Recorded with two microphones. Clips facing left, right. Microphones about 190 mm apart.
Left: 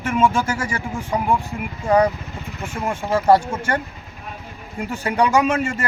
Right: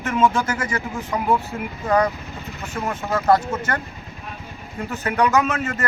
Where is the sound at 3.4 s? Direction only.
30° left (ahead or behind).